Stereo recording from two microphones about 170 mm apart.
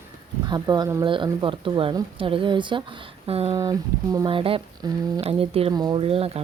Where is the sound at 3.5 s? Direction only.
20° right (ahead or behind).